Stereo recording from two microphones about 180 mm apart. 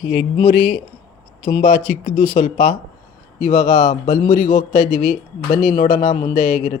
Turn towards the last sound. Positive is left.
turn(degrees=35)  # may be behind; listen again after turning